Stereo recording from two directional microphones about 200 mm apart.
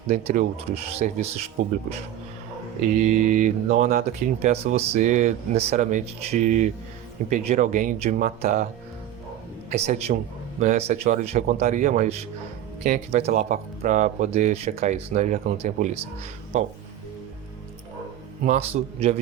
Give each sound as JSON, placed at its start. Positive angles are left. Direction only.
{"t": 0.1, "sound": "speech", "side_deg": -35}
{"t": 2.9, "sound": "speech", "side_deg": -40}
{"t": 4.4, "sound": "speech", "side_deg": -30}
{"t": 9.7, "sound": "speech", "side_deg": -35}
{"t": 18.4, "sound": "speech", "side_deg": -35}